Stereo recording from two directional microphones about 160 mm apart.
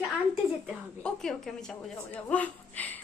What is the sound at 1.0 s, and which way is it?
A man's voice, 5° left (ahead or behind).